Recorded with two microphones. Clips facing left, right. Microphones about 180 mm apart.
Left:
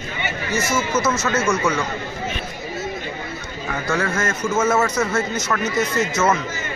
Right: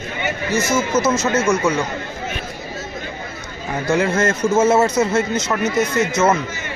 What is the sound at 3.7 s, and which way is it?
A man's voice, 20° right (ahead or behind).